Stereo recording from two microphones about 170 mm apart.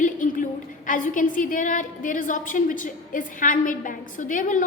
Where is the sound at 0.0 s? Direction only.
50° left (ahead or behind).